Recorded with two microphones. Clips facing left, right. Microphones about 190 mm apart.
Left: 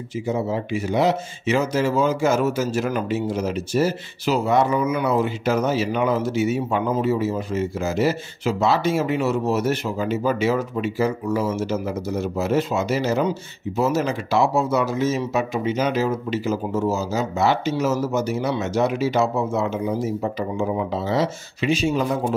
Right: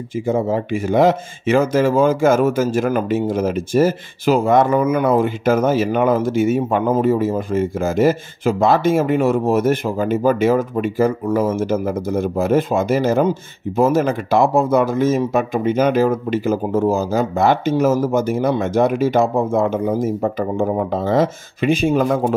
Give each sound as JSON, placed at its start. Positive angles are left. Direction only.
{"t": 0.3, "sound": "speech", "side_deg": -50}